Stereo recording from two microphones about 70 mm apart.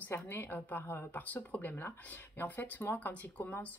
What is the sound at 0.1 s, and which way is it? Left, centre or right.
A woman's voice, left.